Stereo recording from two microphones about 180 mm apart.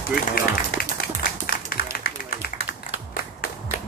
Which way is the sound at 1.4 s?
55° left (ahead or behind).